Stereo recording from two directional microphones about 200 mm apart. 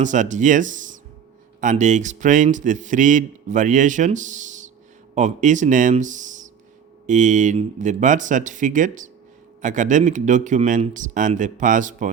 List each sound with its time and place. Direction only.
0.0 s a man's voice: 40° right (ahead or behind)